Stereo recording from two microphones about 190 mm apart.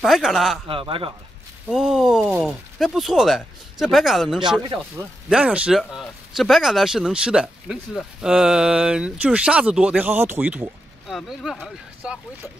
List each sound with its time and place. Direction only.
0.0 s speech: centre (ahead or behind)
0.7 s speech: 30° right (ahead or behind)
1.7 s speech: centre (ahead or behind)